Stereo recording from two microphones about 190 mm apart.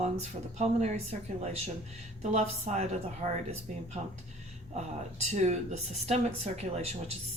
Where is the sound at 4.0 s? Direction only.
35° right (ahead or behind).